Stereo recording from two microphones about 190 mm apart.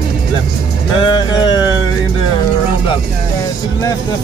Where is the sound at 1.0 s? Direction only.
25° left (ahead or behind).